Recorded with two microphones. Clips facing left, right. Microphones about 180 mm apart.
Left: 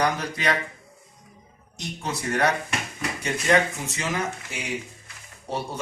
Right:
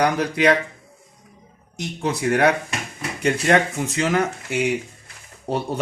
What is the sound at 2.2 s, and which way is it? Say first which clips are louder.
Speech: right 6 dB; 60° right (ahead or behind).